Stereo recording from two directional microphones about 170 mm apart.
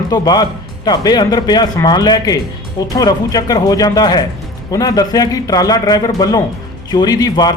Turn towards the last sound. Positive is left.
turn(degrees=25)  # may be behind; listen again after turning